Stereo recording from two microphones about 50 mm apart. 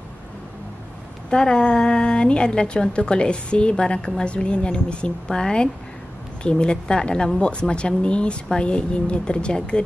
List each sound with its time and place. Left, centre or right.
1.3 s a woman's voice: centre